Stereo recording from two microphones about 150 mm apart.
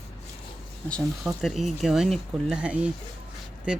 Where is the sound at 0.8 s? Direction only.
5° left (ahead or behind).